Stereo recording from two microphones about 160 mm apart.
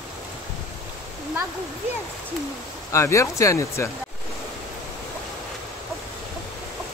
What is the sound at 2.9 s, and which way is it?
Speech, 20° left (ahead or behind).